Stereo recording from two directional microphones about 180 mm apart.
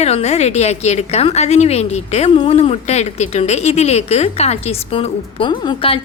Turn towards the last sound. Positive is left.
turn(degrees=30)  # may be behind; listen again after turning